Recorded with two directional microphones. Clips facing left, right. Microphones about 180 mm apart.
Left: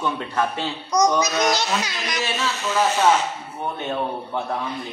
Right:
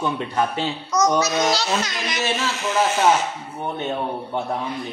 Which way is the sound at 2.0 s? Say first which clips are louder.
Right 2 dB; 25° right (ahead or behind).